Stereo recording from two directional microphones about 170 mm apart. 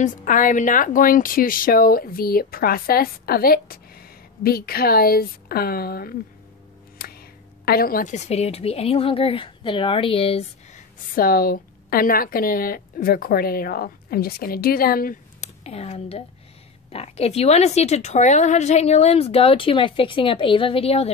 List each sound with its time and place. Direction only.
0.0 s a woman's voice: 50° left (ahead or behind)
11.1 s a woman's voice: 60° left (ahead or behind)
15.4 s a woman's voice: 40° left (ahead or behind)